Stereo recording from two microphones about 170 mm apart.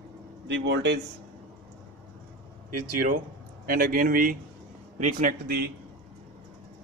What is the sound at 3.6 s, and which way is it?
A man's voice, 55° right (ahead or behind).